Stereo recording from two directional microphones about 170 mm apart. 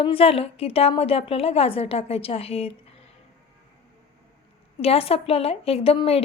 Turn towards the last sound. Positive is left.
turn(degrees=35)  # may be behind; listen again after turning